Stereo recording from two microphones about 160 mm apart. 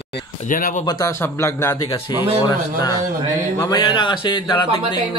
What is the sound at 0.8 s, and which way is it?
A man's voice, 25° left (ahead or behind).